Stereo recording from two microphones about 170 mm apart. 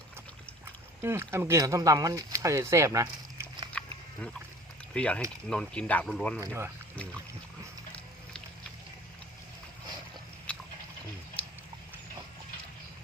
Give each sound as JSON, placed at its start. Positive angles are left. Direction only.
{"t": 1.0, "sound": "speech", "side_deg": -15}
{"t": 3.7, "sound": "a sound", "side_deg": 5}
{"t": 4.9, "sound": "speech", "side_deg": 5}
{"t": 6.4, "sound": "speech", "side_deg": -15}
{"t": 6.9, "sound": "speech", "side_deg": 5}
{"t": 10.5, "sound": "a sound", "side_deg": 5}